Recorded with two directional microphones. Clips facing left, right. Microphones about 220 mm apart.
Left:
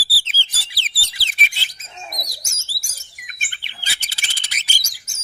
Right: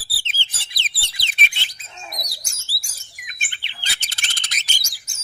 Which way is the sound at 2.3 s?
45° left (ahead or behind).